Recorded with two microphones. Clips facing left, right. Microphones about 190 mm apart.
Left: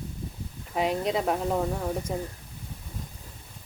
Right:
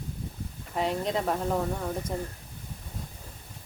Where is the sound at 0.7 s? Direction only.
10° left (ahead or behind).